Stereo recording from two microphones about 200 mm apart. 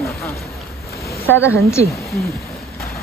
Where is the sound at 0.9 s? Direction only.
15° left (ahead or behind).